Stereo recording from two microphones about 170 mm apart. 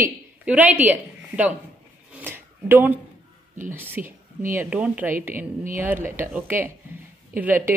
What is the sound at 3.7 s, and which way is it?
A woman's voice, 10° right (ahead or behind).